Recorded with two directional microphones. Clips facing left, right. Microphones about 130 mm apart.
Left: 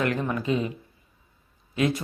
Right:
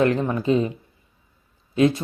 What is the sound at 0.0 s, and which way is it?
Speech, 30° right (ahead or behind).